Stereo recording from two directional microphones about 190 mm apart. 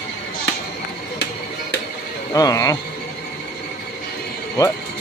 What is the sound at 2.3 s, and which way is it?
Speech, 20° left (ahead or behind).